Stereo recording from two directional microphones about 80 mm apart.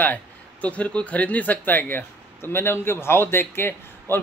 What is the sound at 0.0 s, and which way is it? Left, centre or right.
Speech, centre.